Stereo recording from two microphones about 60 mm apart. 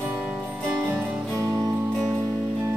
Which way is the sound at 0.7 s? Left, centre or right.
Right.